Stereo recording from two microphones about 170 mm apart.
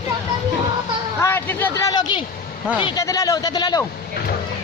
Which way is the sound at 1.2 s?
15° left (ahead or behind).